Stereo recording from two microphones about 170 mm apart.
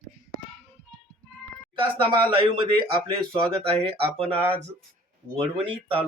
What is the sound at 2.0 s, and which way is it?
Speech, 30° right (ahead or behind).